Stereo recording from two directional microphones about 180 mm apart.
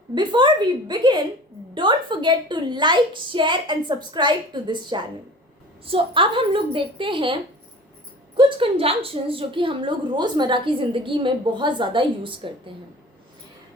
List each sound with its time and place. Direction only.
0.1 s a woman's voice: 25° right (ahead or behind)
8.4 s a woman's voice: 30° right (ahead or behind)